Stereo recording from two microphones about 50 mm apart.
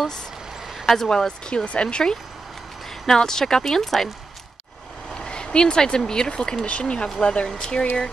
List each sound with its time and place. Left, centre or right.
0.8 s speech: centre
5.1 s speech: centre